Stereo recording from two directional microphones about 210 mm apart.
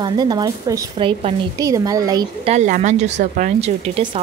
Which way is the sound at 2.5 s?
35° right (ahead or behind).